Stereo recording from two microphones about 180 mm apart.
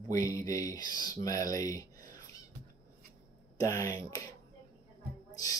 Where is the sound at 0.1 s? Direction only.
15° left (ahead or behind).